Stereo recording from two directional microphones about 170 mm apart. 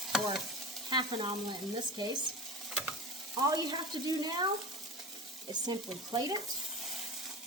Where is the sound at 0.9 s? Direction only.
25° right (ahead or behind).